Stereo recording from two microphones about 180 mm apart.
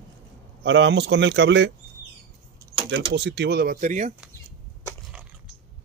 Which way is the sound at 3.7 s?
45° right (ahead or behind).